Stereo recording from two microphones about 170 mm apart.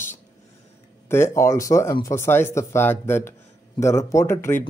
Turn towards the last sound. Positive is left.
turn(degrees=15)  # may be behind; listen again after turning